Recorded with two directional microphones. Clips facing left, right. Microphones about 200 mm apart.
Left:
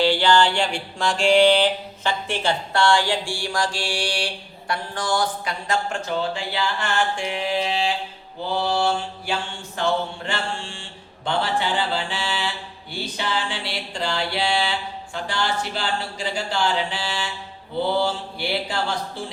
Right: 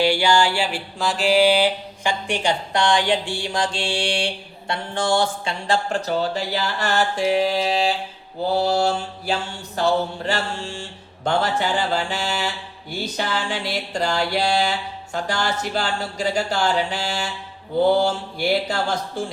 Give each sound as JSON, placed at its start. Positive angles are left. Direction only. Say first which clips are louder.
{"t": 0.0, "sound": "mantra", "louder": "even", "side_deg": -10}
{"t": 4.7, "sound": "speech", "louder": "right 3 dB", "side_deg": -25}
{"t": 8.4, "sound": "a sound", "louder": "right 3 dB", "side_deg": -40}